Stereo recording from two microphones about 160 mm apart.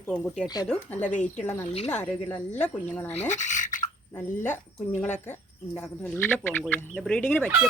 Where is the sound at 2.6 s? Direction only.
10° left (ahead or behind).